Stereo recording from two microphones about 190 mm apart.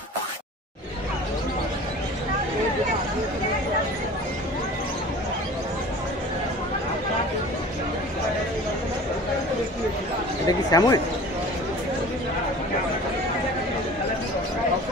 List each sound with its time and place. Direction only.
10.4 s speech: 20° left (ahead or behind)